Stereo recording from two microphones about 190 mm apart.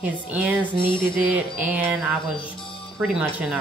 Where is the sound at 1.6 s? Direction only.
10° right (ahead or behind).